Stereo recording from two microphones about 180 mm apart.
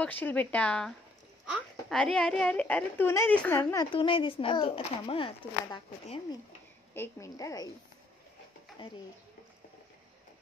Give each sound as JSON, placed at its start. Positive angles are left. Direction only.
{"t": 0.0, "sound": "a woman's voice", "side_deg": 10}
{"t": 6.9, "sound": "a woman's voice", "side_deg": 15}